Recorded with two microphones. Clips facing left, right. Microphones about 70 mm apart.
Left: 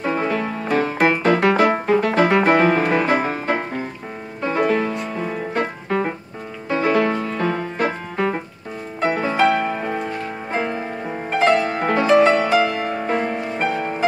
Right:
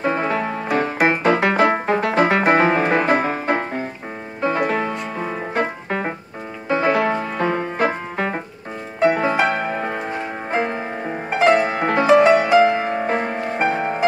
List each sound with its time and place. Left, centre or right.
0.0 s music: right
1.6 s music: right
4.6 s piano: right
6.7 s music: right
9.0 s music: right